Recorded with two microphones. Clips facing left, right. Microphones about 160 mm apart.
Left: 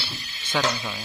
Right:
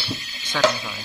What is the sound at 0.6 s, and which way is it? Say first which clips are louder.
Speech: right 10 dB; 90° right.